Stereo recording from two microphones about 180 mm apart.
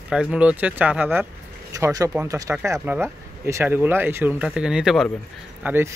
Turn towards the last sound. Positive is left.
turn(degrees=-10)  # may be behind; listen again after turning